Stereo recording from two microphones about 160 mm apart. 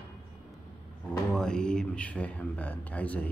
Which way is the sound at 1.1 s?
5° left (ahead or behind).